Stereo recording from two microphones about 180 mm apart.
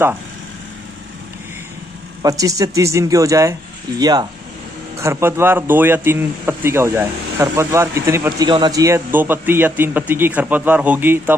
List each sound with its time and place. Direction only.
2.2 s speech: 20° right (ahead or behind)